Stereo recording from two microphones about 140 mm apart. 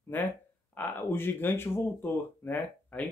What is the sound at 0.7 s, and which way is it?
Speech, 15° left (ahead or behind).